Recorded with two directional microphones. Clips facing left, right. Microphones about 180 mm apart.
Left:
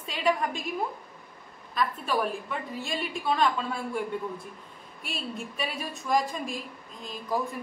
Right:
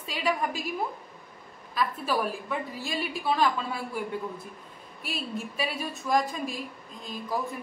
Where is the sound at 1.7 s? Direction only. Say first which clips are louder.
Even; 5° right (ahead or behind).